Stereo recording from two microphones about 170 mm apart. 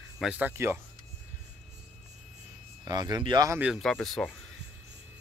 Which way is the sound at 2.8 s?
25° right (ahead or behind).